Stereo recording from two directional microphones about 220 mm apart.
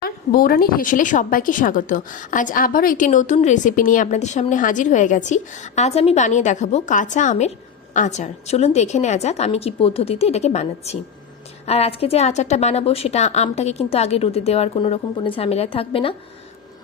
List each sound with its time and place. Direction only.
0.0 s a woman's voice: 40° left (ahead or behind); by 16.1 s 25° left (ahead or behind)